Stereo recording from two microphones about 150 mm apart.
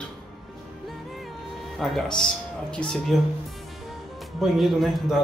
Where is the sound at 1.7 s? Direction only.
Centre (ahead or behind).